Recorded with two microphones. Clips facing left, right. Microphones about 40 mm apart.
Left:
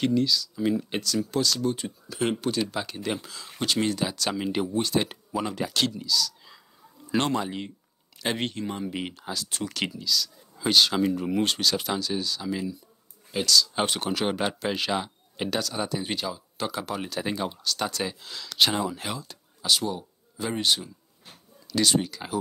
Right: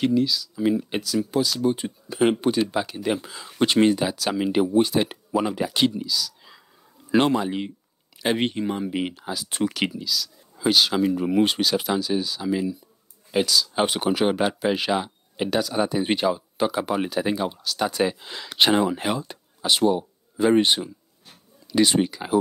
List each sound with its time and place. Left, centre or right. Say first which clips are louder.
0.0 s speech: right 2 dB; centre
3.5 s speech: right 8 dB; right
4.0 s speech: right 4 dB; centre
13.3 s speech: right 3 dB; right
13.6 s speech: right 2 dB; centre
16.1 s speech: right 9 dB; right
16.5 s speech: right 7 dB; centre
17.2 s speech: right 5 dB; centre
17.9 s speech: right 8 dB; right